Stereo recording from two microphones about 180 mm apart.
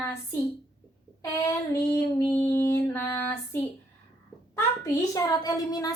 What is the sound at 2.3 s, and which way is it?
Music, 15° left (ahead or behind).